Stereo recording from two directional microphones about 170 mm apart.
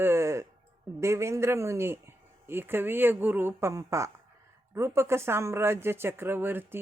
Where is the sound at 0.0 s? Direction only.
15° right (ahead or behind).